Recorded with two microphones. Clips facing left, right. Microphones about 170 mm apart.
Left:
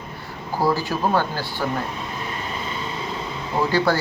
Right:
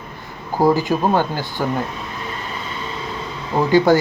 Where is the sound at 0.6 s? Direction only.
20° right (ahead or behind).